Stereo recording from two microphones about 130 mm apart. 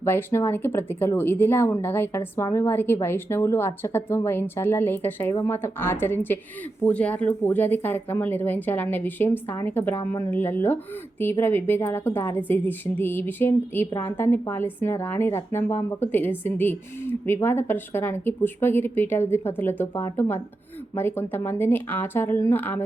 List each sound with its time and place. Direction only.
0.0 s a woman's voice: 15° left (ahead or behind)